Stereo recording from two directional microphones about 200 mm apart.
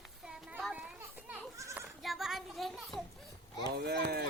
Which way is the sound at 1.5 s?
15° right (ahead or behind).